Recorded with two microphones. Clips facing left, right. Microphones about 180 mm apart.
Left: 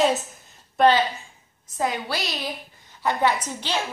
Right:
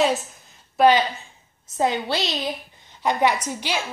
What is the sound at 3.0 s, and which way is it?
Speech, 15° right (ahead or behind).